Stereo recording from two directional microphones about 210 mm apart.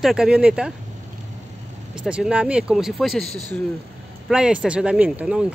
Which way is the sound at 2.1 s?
5° right (ahead or behind).